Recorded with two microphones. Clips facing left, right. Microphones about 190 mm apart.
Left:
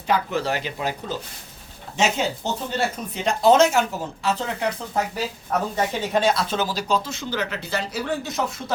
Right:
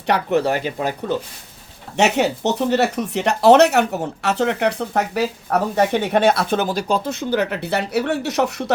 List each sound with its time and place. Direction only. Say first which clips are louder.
0.1 s speech: right 5 dB; 60° right (ahead or behind)
2.0 s speech: right 5 dB; 65° right (ahead or behind)